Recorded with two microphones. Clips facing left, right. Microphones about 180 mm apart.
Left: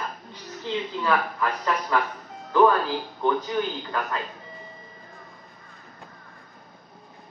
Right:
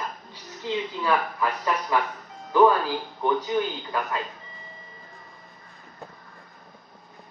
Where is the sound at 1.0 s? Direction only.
15° right (ahead or behind).